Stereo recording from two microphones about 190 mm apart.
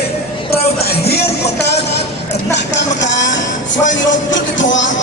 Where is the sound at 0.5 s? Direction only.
55° left (ahead or behind).